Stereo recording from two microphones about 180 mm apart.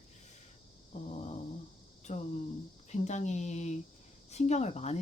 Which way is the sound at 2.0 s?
40° left (ahead or behind).